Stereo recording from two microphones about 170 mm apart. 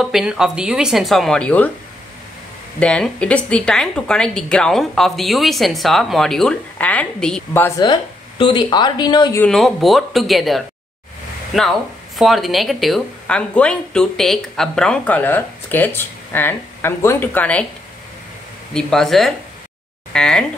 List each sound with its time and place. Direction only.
0.0 s speech: 5° right (ahead or behind)
2.8 s speech: 5° left (ahead or behind)
7.8 s speech: 25° left (ahead or behind)
9.4 s speech: centre (ahead or behind)
12.2 s speech: centre (ahead or behind)
18.7 s speech: 5° left (ahead or behind)